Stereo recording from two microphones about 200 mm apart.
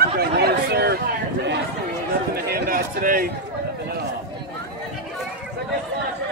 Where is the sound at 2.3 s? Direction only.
50° right (ahead or behind).